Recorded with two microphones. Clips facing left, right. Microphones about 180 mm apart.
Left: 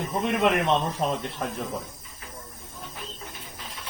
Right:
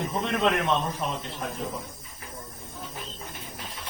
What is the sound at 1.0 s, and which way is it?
Speech, 35° left (ahead or behind).